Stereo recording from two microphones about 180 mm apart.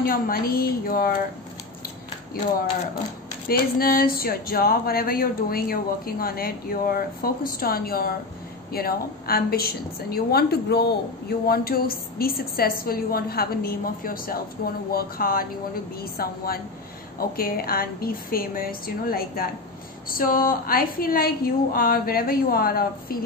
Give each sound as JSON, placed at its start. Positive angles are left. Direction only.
{"t": 0.0, "sound": "a woman's voice", "side_deg": 55}
{"t": 3.4, "sound": "a woman's voice", "side_deg": 55}